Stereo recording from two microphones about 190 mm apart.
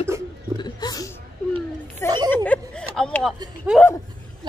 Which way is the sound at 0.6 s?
20° left (ahead or behind).